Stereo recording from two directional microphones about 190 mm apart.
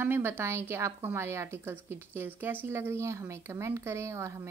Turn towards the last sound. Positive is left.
turn(degrees=-15)  # may be behind; listen again after turning